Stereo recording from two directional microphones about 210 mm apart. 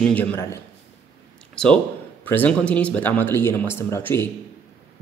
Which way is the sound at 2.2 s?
10° left (ahead or behind).